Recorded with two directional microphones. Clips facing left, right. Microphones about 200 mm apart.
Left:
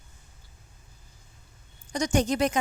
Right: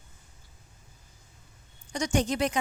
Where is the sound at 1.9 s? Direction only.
40° left (ahead or behind).